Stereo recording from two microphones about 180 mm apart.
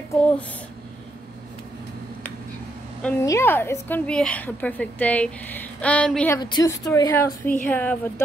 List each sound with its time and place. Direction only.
3.0 s a woman's voice: 10° left (ahead or behind)
6.3 s a woman's voice: 20° left (ahead or behind)